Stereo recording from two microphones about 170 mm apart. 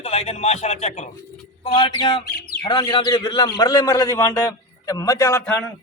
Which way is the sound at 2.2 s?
65° left (ahead or behind).